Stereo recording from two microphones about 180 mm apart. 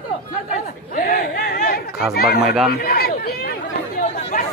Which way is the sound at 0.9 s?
55° left (ahead or behind).